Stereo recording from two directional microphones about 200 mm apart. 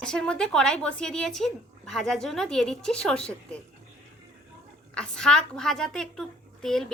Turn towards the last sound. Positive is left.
turn(degrees=0)  # may be behind; listen again after turning